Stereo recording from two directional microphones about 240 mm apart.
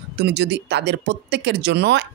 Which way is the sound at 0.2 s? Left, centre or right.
Right.